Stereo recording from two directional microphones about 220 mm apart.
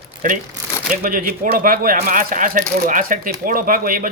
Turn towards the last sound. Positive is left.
turn(degrees=-40)  # may be behind; listen again after turning